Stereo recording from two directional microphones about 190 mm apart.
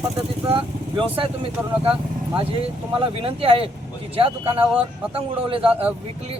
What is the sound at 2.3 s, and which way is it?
Speech, 30° right (ahead or behind).